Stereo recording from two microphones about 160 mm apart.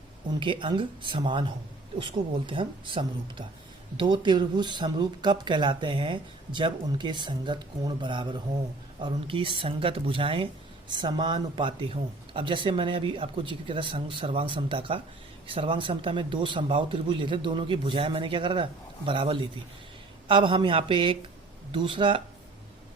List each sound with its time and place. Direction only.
0.3 s speech: 30° right (ahead or behind)